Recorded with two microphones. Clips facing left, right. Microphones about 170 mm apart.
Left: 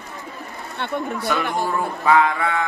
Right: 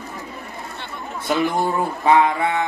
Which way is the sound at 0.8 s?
60° left (ahead or behind).